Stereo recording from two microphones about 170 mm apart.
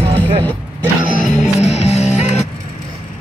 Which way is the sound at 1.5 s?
40° left (ahead or behind).